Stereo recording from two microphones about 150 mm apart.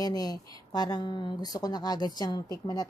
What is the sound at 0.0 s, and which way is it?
A woman's voice, 25° left (ahead or behind).